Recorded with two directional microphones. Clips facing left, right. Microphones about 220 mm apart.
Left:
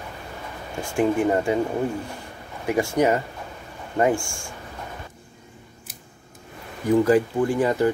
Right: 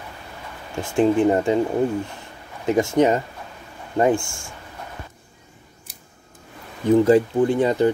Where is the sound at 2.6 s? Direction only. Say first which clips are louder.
Right 3 dB; 25° right (ahead or behind).